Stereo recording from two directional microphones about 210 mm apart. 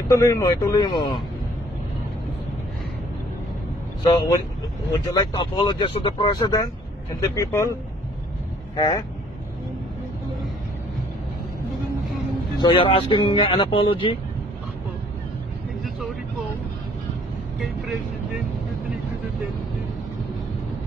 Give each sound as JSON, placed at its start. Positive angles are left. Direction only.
{"t": 0.1, "sound": "speech", "side_deg": 15}
{"t": 4.0, "sound": "speech", "side_deg": 20}
{"t": 8.7, "sound": "speech", "side_deg": 20}
{"t": 12.5, "sound": "speech", "side_deg": 25}
{"t": 15.8, "sound": "vehicle", "side_deg": 0}